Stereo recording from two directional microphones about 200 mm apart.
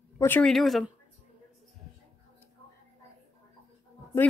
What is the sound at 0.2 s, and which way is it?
Speech, 5° left (ahead or behind).